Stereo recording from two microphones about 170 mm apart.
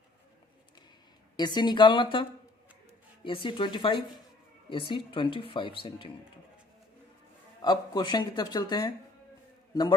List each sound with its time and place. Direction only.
1.4 s speech: 25° left (ahead or behind)
3.2 s speech: 30° left (ahead or behind)
7.6 s speech: 25° left (ahead or behind)